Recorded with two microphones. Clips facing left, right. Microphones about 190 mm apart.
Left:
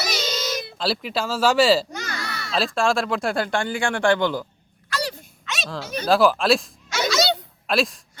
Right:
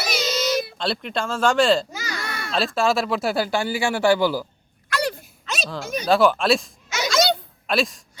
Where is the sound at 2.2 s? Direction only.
50° right (ahead or behind).